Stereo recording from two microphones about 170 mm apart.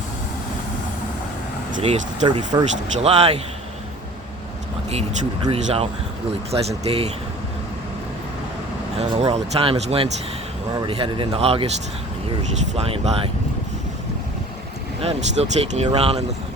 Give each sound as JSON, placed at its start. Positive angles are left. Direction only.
{"t": 1.8, "sound": "speech", "side_deg": -30}
{"t": 3.0, "sound": "speech", "side_deg": -35}
{"t": 5.4, "sound": "speech", "side_deg": -35}
{"t": 9.0, "sound": "speech", "side_deg": -35}
{"t": 15.0, "sound": "speech", "side_deg": -40}